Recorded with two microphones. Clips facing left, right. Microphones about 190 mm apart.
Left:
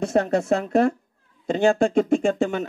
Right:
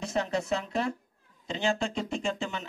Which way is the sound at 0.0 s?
55° left (ahead or behind).